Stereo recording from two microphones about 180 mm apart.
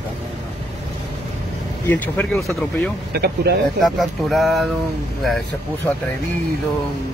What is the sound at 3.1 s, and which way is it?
Speech, 60° right (ahead or behind).